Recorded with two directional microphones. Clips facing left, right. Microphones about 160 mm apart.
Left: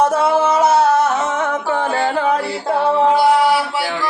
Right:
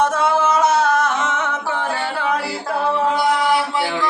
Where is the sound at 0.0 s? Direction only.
35° left (ahead or behind).